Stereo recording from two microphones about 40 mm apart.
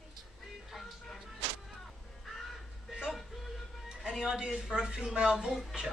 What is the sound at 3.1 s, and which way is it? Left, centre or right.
Music, centre.